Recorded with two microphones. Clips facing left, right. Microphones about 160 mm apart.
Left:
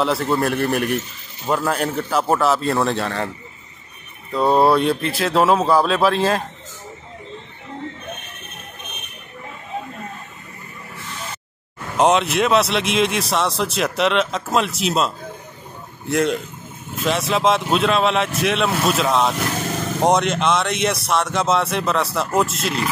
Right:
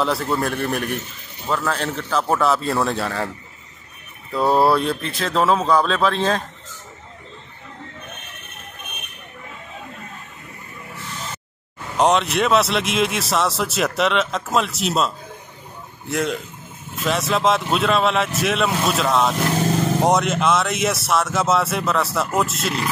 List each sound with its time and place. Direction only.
0.0 s speech: centre (ahead or behind)
4.3 s speech: 5° right (ahead or behind)
12.0 s speech: centre (ahead or behind)